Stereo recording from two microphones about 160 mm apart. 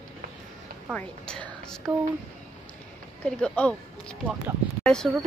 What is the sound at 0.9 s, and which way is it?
Speech, 5° left (ahead or behind).